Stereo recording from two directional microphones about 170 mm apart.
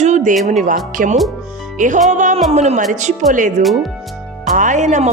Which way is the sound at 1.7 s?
50° right (ahead or behind).